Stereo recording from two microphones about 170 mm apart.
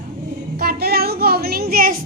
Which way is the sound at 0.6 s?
65° right (ahead or behind).